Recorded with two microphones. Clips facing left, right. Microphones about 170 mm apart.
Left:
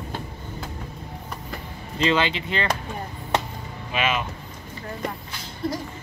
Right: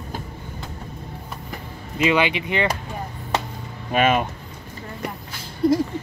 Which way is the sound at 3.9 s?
50° right (ahead or behind).